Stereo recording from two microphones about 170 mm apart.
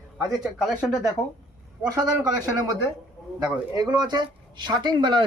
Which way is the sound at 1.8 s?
20° right (ahead or behind).